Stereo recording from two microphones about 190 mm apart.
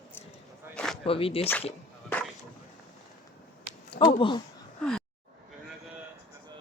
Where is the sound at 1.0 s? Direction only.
30° left (ahead or behind).